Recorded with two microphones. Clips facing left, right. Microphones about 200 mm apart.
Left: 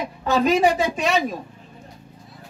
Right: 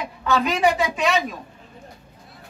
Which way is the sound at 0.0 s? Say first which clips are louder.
Left 2 dB; 40° left (ahead or behind).